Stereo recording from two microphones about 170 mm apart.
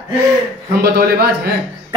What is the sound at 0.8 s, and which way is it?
Speech, 70° right (ahead or behind).